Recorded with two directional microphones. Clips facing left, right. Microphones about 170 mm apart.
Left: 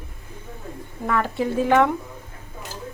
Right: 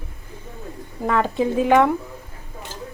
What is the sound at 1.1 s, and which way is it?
Speech, 20° right (ahead or behind).